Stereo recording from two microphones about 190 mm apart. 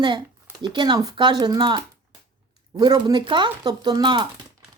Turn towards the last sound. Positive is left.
turn(degrees=-25)  # may be behind; listen again after turning